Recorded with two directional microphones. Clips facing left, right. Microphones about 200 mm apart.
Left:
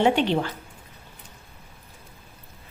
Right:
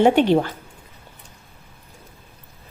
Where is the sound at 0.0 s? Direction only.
45° right (ahead or behind).